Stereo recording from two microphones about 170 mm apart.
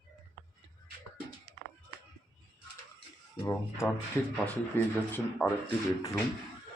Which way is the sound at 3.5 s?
15° left (ahead or behind).